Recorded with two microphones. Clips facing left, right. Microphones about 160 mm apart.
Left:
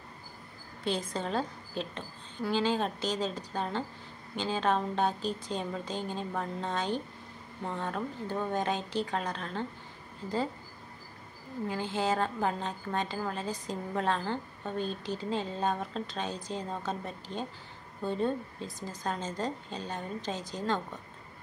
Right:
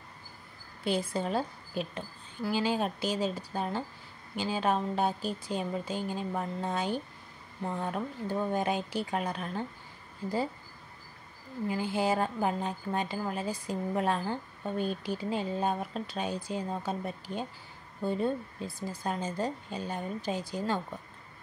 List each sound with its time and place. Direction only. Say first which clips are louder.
0.8 s speech: right 2 dB; 10° right (ahead or behind)
11.6 s speech: right 2 dB; 10° right (ahead or behind)